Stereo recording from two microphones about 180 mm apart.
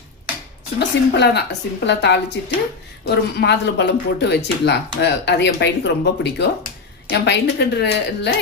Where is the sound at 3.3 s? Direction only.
70° left (ahead or behind).